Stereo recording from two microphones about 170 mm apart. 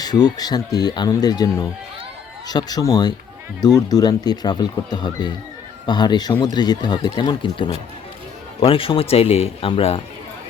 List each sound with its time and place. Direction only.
0.0 s speech: 25° left (ahead or behind)